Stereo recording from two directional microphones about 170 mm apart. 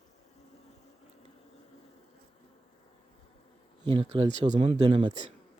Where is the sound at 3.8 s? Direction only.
30° right (ahead or behind).